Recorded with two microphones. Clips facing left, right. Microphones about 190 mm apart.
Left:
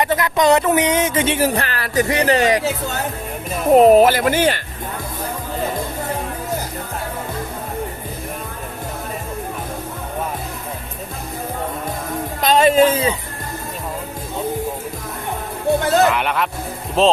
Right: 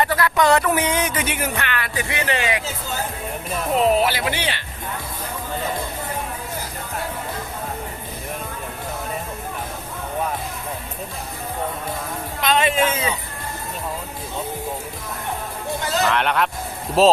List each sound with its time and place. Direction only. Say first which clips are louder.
0.0 s speech: left 2 dB; 20° left (ahead or behind); by 2.6 s 40° left (ahead or behind)
2.6 s speech: left 6 dB; 70° left (ahead or behind)
3.7 s speech: left 9 dB; 45° left (ahead or behind)
12.4 s a man's voice: left 7 dB; 40° left (ahead or behind)
15.8 s speech: left 6 dB; 55° left (ahead or behind)
16.0 s speech: left 1 dB; 5° left (ahead or behind)